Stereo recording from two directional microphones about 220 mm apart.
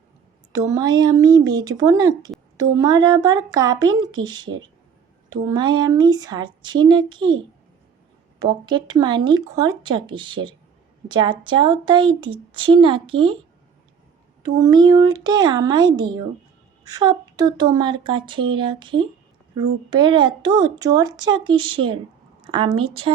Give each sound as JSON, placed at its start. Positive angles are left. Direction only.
{"t": 0.5, "sound": "a woman's voice", "side_deg": -15}
{"t": 8.4, "sound": "a woman's voice", "side_deg": -20}
{"t": 14.4, "sound": "a woman's voice", "side_deg": -20}